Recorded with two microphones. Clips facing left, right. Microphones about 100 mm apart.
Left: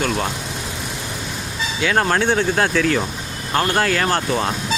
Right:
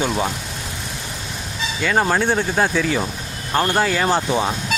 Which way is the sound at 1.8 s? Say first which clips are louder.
Even; 5° right (ahead or behind).